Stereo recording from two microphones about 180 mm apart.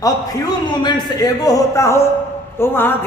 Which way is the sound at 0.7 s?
25° left (ahead or behind).